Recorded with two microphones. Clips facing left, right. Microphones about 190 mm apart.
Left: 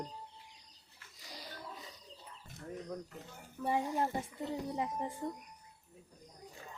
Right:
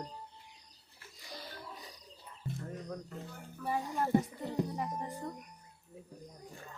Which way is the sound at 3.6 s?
25° left (ahead or behind).